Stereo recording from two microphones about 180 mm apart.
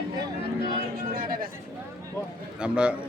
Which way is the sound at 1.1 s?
50° right (ahead or behind).